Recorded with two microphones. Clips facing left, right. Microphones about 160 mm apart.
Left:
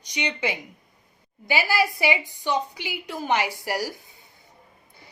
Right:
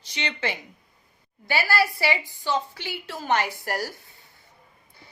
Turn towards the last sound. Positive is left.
turn(degrees=10)  # may be behind; listen again after turning